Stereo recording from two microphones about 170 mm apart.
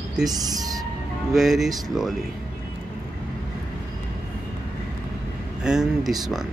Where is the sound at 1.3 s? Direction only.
Centre (ahead or behind).